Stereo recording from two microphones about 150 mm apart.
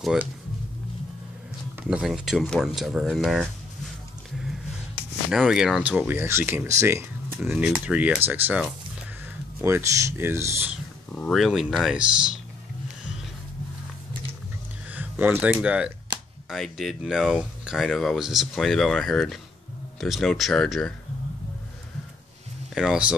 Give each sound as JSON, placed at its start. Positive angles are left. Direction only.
{"t": 0.0, "sound": "speech", "side_deg": -5}
{"t": 1.8, "sound": "speech", "side_deg": -5}
{"t": 5.3, "sound": "speech", "side_deg": -5}
{"t": 11.1, "sound": "speech", "side_deg": 5}
{"t": 14.9, "sound": "speech", "side_deg": -10}
{"t": 22.8, "sound": "speech", "side_deg": -5}